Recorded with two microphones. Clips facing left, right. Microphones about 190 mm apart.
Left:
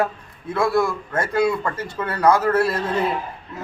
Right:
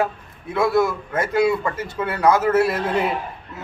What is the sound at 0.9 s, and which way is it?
Speech, 25° right (ahead or behind).